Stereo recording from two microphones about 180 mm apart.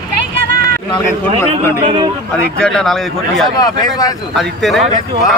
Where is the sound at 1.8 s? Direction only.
25° right (ahead or behind).